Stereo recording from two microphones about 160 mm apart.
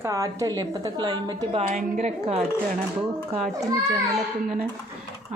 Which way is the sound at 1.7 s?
50° right (ahead or behind).